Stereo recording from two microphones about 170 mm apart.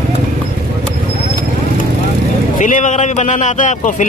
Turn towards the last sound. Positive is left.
turn(degrees=50)  # may be behind; listen again after turning